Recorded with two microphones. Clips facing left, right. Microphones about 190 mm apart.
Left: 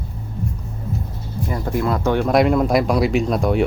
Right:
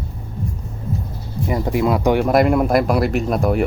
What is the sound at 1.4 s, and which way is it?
Speech, 15° right (ahead or behind).